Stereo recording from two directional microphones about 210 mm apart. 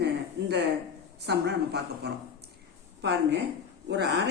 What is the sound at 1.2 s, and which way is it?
A man's voice, 50° right (ahead or behind).